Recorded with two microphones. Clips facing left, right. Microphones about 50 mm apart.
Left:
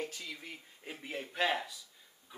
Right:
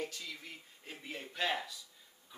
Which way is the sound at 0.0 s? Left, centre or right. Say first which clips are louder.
Left 1 dB; centre.